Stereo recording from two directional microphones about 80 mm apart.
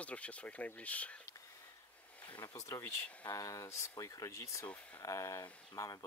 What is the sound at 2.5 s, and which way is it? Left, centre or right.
Speech, left.